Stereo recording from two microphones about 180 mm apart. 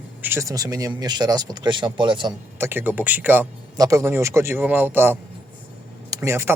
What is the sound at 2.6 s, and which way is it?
Speech, 10° right (ahead or behind).